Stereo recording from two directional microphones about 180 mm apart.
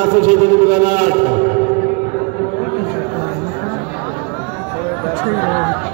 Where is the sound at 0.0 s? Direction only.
50° right (ahead or behind).